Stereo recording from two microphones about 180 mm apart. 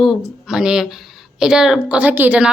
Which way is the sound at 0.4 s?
5° right (ahead or behind).